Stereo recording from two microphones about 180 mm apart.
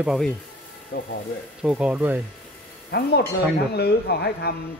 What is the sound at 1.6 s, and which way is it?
Speech, 5° right (ahead or behind).